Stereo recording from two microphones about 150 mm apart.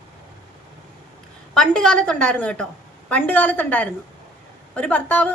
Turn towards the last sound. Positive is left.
turn(degrees=10)  # may be behind; listen again after turning